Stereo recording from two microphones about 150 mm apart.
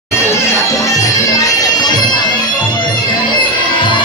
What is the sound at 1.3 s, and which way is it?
Bagpipes, 25° left (ahead or behind).